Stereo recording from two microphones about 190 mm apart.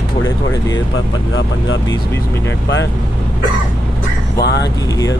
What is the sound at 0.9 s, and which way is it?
Speech, 85° left.